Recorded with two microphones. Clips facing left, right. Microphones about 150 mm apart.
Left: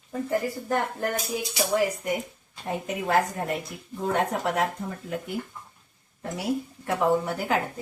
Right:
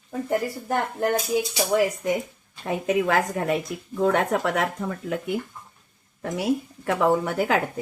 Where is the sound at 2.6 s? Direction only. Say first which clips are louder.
Right 6 dB; 90° right.